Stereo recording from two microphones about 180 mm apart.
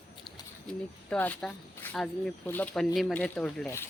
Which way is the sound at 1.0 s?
5° left (ahead or behind).